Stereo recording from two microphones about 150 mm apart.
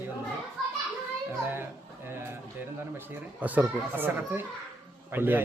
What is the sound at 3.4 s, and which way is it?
Speech, 10° right (ahead or behind).